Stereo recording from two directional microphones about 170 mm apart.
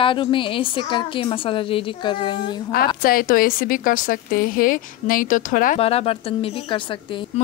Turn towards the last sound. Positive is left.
turn(degrees=30)  # may be behind; listen again after turning